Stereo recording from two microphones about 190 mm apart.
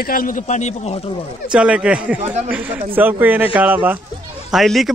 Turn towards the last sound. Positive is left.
turn(degrees=0)  # may be behind; listen again after turning